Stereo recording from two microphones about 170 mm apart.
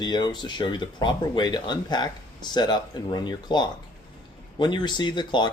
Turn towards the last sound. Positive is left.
turn(degrees=25)  # may be behind; listen again after turning